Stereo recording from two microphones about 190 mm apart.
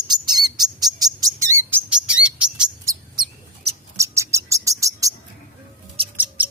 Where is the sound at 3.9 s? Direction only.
15° right (ahead or behind).